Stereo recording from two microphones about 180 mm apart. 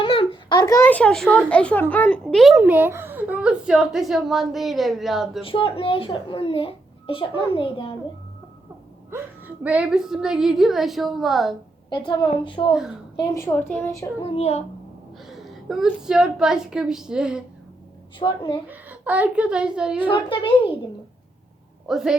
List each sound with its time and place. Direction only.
0.0 s a child's voice: 30° left (ahead or behind); by 5.4 s centre (ahead or behind)
5.4 s a child's voice: 30° left (ahead or behind)
9.6 s a child's voice: 5° right (ahead or behind)
11.9 s a child's voice: 25° left (ahead or behind)
13.1 s a woman's voice: 15° left (ahead or behind)
14.3 s a child's voice: 35° left (ahead or behind)
15.3 s a sound: centre (ahead or behind)
16.0 s a child's voice: 5° right (ahead or behind)
18.2 s a child's voice: 25° left (ahead or behind)
18.7 s a woman's voice: 10° right (ahead or behind)
20.1 s a child's voice: 30° left (ahead or behind)
21.8 s a child's voice: centre (ahead or behind)